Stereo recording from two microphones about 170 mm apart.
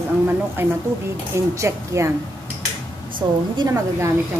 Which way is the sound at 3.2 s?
25° right (ahead or behind).